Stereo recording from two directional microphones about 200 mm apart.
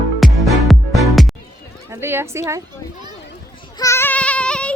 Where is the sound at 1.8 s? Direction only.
10° right (ahead or behind).